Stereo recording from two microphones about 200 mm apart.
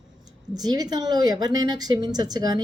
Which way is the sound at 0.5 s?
20° right (ahead or behind).